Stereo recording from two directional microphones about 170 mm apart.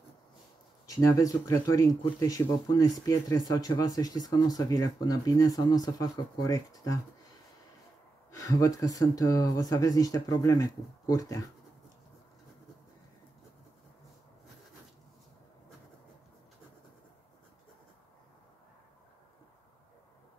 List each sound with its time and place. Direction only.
0.8 s speech: 20° left (ahead or behind)
8.3 s speech: 20° left (ahead or behind)